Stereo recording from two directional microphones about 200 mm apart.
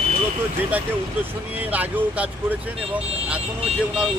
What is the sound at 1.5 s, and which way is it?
Speech, 10° right (ahead or behind).